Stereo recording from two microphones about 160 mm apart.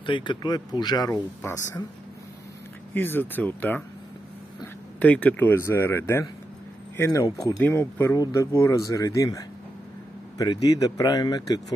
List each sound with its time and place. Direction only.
0.0 s speech: 30° left (ahead or behind)
2.9 s speech: 10° left (ahead or behind)
5.0 s speech: 10° left (ahead or behind); by 11.6 s 25° left (ahead or behind)